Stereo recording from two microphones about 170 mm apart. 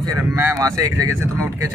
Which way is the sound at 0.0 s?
15° right (ahead or behind).